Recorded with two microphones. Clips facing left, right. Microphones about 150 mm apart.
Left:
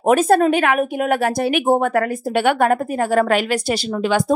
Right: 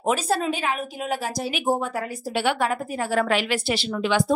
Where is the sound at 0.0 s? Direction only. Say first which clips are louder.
Left 9 dB; 55° left (ahead or behind).